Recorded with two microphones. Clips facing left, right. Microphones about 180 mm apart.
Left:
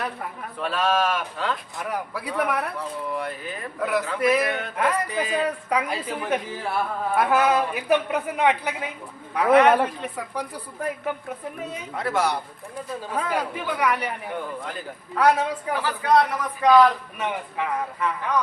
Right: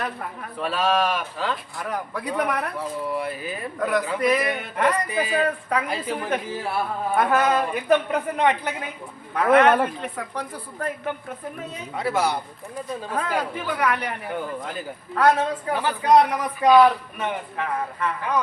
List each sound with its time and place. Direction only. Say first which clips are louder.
0.6 s a woman's voice: right 1 dB; centre (ahead or behind)
3.1 s speech: right 2 dB; 5° right (ahead or behind)
3.8 s speech: right 1 dB; 5° left (ahead or behind)
4.4 s speech: right 1 dB; 10° right (ahead or behind)
5.5 s a woman's voice: even; 10° left (ahead or behind)
11.9 s speech: right 1 dB; 5° right (ahead or behind)
13.1 s a woman's voice: even; 10° left (ahead or behind)
14.3 s speech: right 2 dB; centre (ahead or behind)
15.2 s a woman's voice: right 1 dB; 10° left (ahead or behind)
15.8 s speech: right 3 dB; 20° right (ahead or behind)
17.2 s a woman's voice: even; 10° left (ahead or behind)